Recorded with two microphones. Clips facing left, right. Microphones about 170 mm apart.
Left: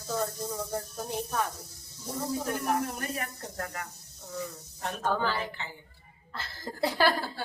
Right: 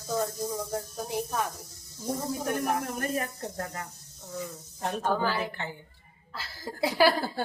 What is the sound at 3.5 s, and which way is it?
Speech, 25° right (ahead or behind).